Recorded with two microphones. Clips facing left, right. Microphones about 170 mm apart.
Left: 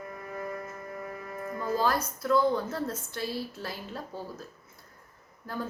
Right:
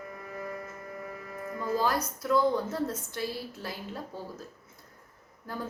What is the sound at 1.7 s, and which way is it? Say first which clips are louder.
Music: left 1 dB; 10° right (ahead or behind).